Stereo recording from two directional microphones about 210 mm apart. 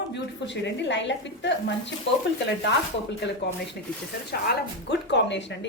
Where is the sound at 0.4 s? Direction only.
55° left (ahead or behind).